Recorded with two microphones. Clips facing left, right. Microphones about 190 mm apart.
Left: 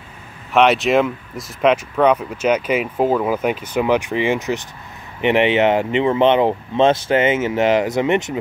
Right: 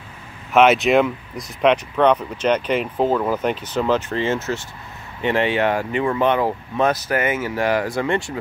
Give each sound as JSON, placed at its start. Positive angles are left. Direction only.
{"t": 0.5, "sound": "speech", "side_deg": 0}